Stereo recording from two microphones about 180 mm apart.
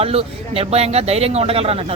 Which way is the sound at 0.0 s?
35° right (ahead or behind).